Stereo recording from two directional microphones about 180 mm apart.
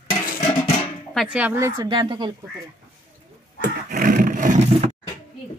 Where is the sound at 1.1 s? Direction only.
Centre (ahead or behind).